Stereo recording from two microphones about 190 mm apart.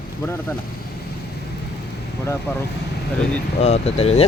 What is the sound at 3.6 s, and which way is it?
Speech, 35° left (ahead or behind).